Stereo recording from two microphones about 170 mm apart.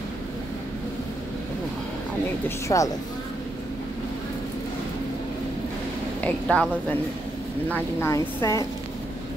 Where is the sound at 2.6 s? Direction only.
20° left (ahead or behind).